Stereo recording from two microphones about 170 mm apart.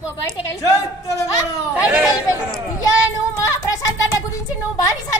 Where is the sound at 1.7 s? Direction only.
10° right (ahead or behind).